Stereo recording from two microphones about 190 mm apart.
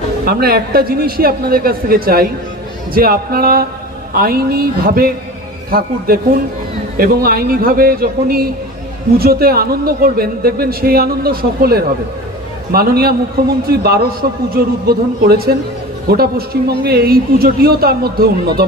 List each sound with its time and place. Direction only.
0.2 s a man's voice: 55° right (ahead or behind)